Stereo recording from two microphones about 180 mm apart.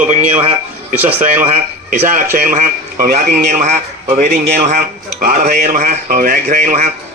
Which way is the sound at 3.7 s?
40° right (ahead or behind).